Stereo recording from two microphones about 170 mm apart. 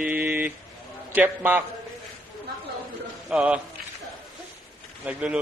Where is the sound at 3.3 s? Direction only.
5° right (ahead or behind).